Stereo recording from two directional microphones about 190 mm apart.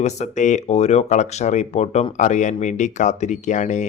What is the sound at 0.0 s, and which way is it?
Speech, 35° left (ahead or behind).